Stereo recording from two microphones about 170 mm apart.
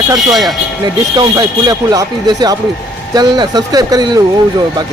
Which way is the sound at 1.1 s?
25° right (ahead or behind).